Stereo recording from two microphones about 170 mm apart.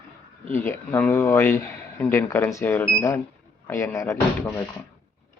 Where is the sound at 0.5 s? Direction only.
15° left (ahead or behind).